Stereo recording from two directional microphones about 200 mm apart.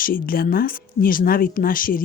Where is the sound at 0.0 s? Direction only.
45° left (ahead or behind).